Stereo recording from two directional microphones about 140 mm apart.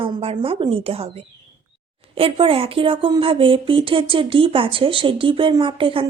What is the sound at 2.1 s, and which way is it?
Speech, 40° right (ahead or behind).